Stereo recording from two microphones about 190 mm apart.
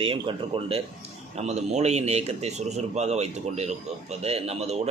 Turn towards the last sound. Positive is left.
turn(degrees=-35)  # may be behind; listen again after turning